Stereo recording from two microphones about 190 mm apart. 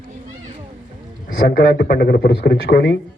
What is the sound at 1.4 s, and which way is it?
Speech, 65° left (ahead or behind).